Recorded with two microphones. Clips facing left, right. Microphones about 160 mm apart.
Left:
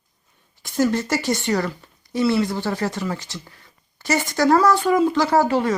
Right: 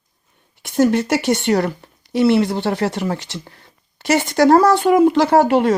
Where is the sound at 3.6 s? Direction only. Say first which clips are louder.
Right 6 dB; 70° right (ahead or behind).